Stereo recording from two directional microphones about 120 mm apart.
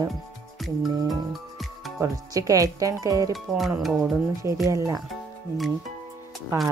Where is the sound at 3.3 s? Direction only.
Centre (ahead or behind).